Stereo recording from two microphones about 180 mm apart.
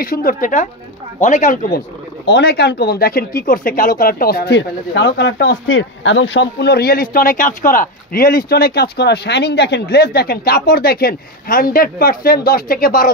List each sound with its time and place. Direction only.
0.0 s a woman's voice: 55° left (ahead or behind)
2.2 s speech: 65° left (ahead or behind)